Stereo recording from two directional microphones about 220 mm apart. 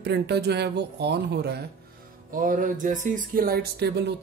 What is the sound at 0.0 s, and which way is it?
Speech, 50° right (ahead or behind).